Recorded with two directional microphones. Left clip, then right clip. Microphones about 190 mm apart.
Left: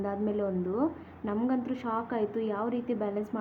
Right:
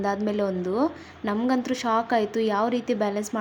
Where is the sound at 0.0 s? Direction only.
25° right (ahead or behind).